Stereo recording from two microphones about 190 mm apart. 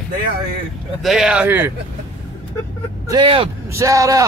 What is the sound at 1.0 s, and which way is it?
Speech, centre (ahead or behind).